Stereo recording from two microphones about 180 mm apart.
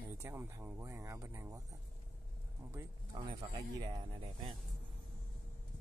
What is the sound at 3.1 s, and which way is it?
Speech, 25° right (ahead or behind).